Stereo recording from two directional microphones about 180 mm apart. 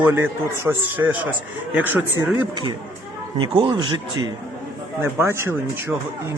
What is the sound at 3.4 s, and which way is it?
Speech, 25° right (ahead or behind).